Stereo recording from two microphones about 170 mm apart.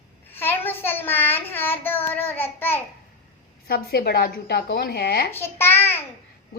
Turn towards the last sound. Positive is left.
turn(degrees=15)  # may be behind; listen again after turning